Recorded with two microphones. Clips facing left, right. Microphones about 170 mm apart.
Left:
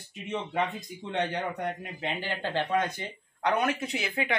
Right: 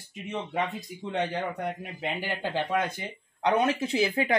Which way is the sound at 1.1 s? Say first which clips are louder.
Right 1 dB; 5° right (ahead or behind).